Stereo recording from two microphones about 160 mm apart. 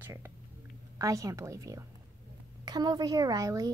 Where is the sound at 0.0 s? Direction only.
15° right (ahead or behind).